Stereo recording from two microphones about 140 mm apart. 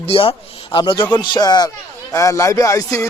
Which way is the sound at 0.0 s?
40° left (ahead or behind).